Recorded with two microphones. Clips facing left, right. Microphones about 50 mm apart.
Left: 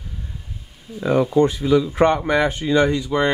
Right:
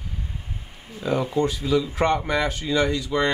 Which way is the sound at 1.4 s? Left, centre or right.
Left.